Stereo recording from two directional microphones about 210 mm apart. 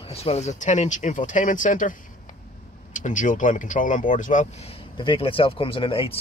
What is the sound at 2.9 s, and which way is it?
Speech, 35° left (ahead or behind).